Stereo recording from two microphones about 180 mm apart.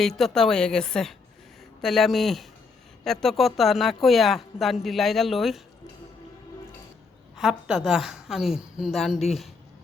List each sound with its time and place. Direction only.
0.0 s a woman's voice: centre (ahead or behind)
7.3 s a woman's voice: centre (ahead or behind)